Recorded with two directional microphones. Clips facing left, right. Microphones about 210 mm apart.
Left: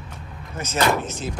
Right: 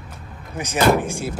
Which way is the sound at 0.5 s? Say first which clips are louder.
Right 4 dB; 15° right (ahead or behind).